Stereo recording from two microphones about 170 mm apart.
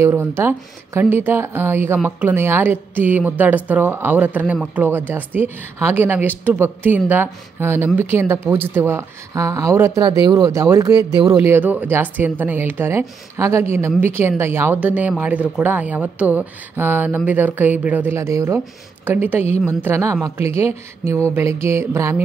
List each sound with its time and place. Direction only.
0.0 s a woman's voice: 15° right (ahead or behind)